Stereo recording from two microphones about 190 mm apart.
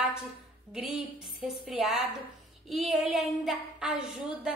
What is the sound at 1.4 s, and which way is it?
A woman's voice, centre (ahead or behind).